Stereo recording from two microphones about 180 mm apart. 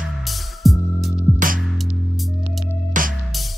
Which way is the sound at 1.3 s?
50° right (ahead or behind).